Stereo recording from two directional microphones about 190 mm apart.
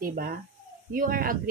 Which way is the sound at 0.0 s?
50° right (ahead or behind).